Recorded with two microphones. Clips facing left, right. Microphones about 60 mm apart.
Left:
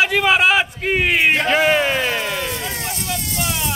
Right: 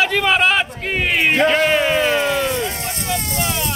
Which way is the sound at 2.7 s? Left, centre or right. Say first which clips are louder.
Right 2 dB; right.